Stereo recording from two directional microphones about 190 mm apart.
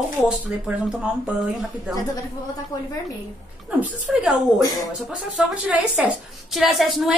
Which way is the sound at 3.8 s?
5° right (ahead or behind).